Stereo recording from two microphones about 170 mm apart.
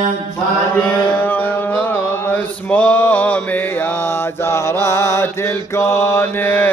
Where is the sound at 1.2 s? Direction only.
10° left (ahead or behind).